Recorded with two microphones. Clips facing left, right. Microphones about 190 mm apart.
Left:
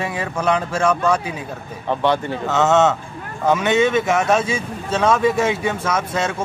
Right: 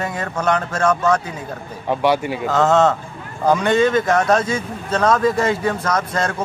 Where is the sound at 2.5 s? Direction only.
5° left (ahead or behind).